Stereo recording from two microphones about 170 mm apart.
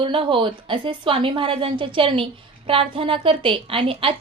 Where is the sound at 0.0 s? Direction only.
30° right (ahead or behind).